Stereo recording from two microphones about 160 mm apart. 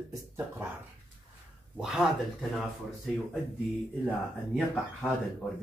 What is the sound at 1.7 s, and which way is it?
Speech, 5° right (ahead or behind).